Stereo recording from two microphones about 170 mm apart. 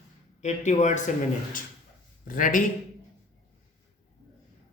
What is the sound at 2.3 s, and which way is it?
Speech, 50° left (ahead or behind).